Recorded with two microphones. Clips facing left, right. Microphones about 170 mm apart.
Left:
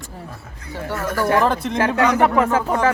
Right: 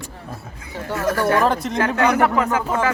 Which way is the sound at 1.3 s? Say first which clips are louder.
Left 3 dB; 15° right (ahead or behind).